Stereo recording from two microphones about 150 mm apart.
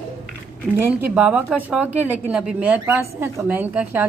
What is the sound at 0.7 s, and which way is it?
A woman's voice, 10° right (ahead or behind).